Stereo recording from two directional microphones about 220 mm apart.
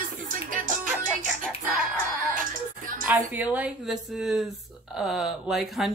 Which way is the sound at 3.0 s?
10° right (ahead or behind).